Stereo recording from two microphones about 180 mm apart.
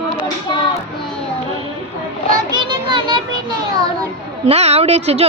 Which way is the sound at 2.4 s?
25° right (ahead or behind).